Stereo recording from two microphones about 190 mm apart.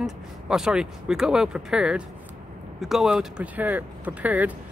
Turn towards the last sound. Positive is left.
turn(degrees=-10)  # may be behind; listen again after turning